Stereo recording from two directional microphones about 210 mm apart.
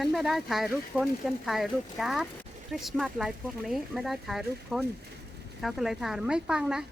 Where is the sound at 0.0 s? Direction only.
Centre (ahead or behind).